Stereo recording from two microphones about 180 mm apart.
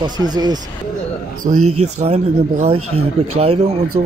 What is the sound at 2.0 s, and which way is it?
Speech, 35° right (ahead or behind).